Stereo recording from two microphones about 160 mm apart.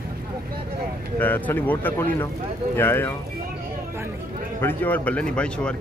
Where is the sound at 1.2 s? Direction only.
10° left (ahead or behind).